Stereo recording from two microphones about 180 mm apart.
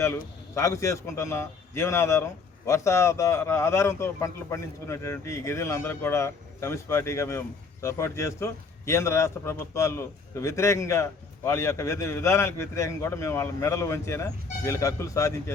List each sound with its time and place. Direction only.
0.0 s a man's voice: 15° left (ahead or behind)